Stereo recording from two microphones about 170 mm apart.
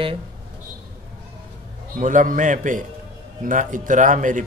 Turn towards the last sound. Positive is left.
turn(degrees=-50)  # may be behind; listen again after turning